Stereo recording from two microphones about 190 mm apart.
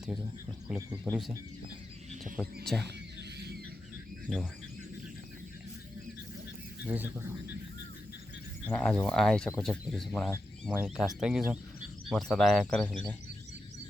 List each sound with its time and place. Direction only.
0.7 s speech: centre (ahead or behind)
2.2 s speech: centre (ahead or behind)
3.2 s a sound: 60° right (ahead or behind)
4.3 s speech: 5° right (ahead or behind)
6.8 s speech: 10° right (ahead or behind)
8.6 s speech: 5° left (ahead or behind)